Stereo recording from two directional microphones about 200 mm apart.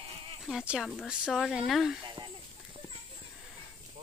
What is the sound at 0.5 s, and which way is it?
Speech, centre (ahead or behind).